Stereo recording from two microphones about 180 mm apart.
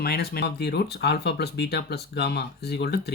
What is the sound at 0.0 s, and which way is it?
Speech, 60° left (ahead or behind).